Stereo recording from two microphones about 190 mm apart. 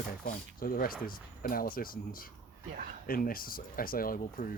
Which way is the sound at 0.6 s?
50° left (ahead or behind).